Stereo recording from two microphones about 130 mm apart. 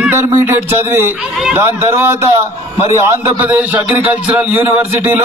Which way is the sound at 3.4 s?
15° right (ahead or behind).